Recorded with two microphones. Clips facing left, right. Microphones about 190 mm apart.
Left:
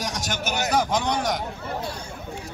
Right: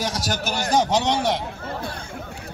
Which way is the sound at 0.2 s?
35° right (ahead or behind).